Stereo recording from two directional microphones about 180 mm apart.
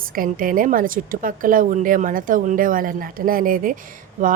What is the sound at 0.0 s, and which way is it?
Speech, 50° right (ahead or behind).